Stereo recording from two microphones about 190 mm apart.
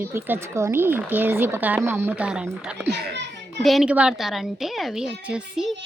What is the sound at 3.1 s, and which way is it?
Children playing, 65° right (ahead or behind).